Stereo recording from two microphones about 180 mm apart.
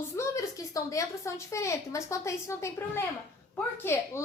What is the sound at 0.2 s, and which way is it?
A woman's voice, 20° left (ahead or behind).